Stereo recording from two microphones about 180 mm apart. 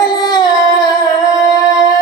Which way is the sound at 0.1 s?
20° left (ahead or behind).